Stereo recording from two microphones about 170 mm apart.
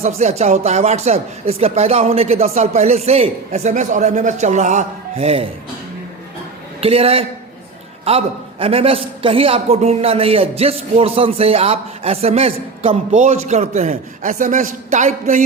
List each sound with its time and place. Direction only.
0.2 s speech: 40° right (ahead or behind)
6.8 s a man's voice: 35° right (ahead or behind)